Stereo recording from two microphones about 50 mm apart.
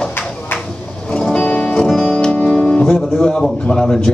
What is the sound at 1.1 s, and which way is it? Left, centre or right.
Music, left.